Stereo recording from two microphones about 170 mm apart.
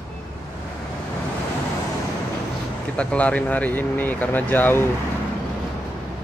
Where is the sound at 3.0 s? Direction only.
5° left (ahead or behind).